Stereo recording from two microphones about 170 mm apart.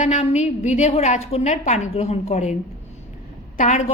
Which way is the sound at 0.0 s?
45° left (ahead or behind).